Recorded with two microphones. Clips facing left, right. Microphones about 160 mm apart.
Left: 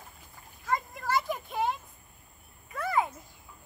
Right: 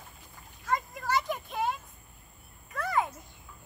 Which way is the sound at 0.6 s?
5° left (ahead or behind).